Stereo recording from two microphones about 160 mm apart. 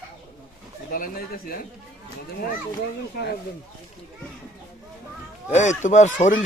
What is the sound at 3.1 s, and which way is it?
Speech, 80° left.